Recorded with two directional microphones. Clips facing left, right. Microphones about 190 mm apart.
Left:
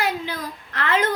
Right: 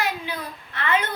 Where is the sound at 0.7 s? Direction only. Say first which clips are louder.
Left 1 dB; 90° left.